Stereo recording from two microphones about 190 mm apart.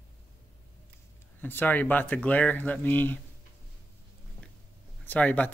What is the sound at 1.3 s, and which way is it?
Speech, 10° left (ahead or behind).